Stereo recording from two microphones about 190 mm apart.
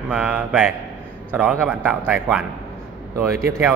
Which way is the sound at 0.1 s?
5° right (ahead or behind).